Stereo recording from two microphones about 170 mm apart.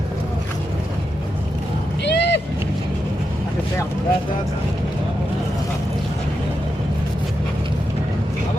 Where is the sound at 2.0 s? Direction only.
90° left.